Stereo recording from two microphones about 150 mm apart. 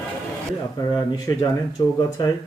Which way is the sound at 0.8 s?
25° left (ahead or behind).